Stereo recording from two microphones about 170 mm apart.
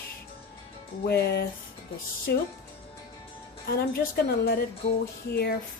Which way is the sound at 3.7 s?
65° left (ahead or behind).